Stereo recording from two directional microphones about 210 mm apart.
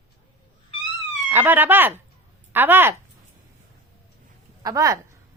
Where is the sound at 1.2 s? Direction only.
10° right (ahead or behind).